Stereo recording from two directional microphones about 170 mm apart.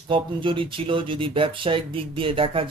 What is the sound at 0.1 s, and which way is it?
Speech, 30° right (ahead or behind).